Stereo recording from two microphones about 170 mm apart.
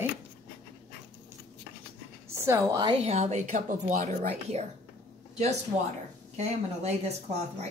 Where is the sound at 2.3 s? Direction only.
15° right (ahead or behind).